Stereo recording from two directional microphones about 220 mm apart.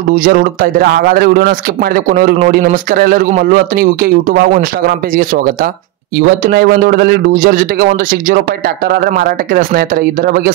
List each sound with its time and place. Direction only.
0.1 s a man's voice: 40° right (ahead or behind)